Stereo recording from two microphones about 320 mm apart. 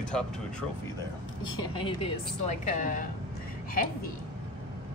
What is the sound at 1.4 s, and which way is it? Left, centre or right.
A woman's voice, centre.